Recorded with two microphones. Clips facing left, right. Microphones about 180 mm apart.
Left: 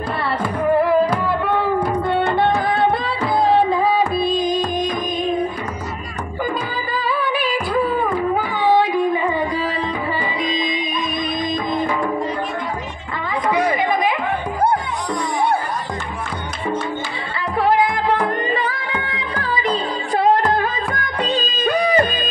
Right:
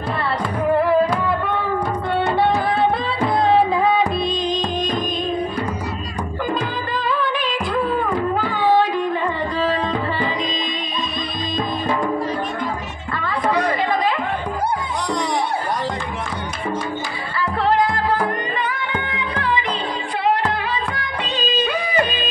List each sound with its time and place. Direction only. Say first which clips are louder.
2.3 s music: even; centre (ahead or behind)
7.2 s music: left 1 dB; 5° left (ahead or behind)
13.5 s chatter: left 2 dB; 15° left (ahead or behind)
17.6 s music: left 1 dB; 15° left (ahead or behind)
18.5 s music: left 2 dB; 35° left (ahead or behind)
20.2 s music of bollywood: left 5 dB; 45° left (ahead or behind)